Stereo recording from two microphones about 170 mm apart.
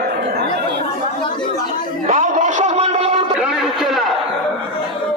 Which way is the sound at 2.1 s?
50° right (ahead or behind).